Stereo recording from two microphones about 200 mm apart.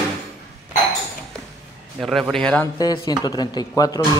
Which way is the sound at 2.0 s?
Centre (ahead or behind).